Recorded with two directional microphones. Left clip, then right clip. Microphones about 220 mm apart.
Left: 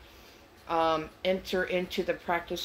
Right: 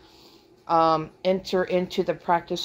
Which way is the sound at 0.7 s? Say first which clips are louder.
Right 7 dB; 35° right (ahead or behind).